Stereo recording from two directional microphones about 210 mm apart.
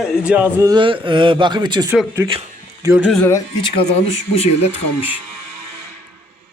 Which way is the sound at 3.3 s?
20° left (ahead or behind).